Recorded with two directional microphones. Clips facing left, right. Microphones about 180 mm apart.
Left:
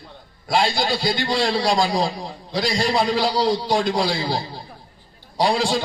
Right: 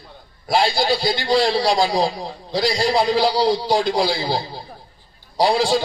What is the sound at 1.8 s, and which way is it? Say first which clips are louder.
Speech: right 2 dB; 30° right (ahead or behind).